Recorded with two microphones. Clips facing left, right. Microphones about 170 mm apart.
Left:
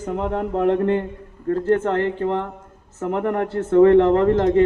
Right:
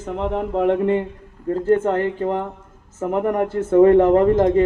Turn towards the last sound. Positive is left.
turn(degrees=-10)  # may be behind; listen again after turning